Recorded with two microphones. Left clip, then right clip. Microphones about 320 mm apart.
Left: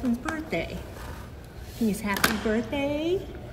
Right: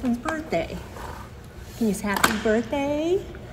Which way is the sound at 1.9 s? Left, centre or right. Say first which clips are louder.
Right 3 dB; centre.